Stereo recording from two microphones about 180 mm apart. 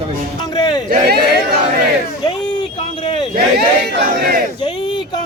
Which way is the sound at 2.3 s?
25° left (ahead or behind).